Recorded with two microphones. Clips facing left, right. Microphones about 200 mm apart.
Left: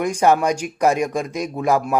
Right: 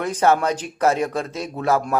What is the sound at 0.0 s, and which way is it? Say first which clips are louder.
Speech: left 2 dB; 15° left (ahead or behind).